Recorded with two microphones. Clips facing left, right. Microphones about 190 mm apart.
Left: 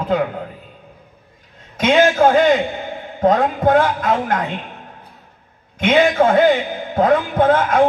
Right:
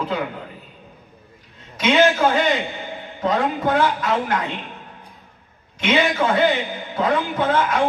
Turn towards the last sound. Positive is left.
turn(degrees=50)  # may be behind; listen again after turning